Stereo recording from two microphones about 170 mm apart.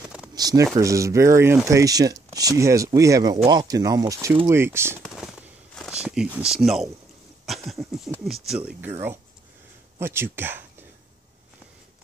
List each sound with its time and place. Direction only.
0.3 s speech: 20° right (ahead or behind)
5.0 s a sound: centre (ahead or behind)
5.9 s speech: 5° right (ahead or behind)
7.4 s a sound: centre (ahead or behind)
8.3 s speech: 5° right (ahead or behind)
9.9 s speech: 15° right (ahead or behind)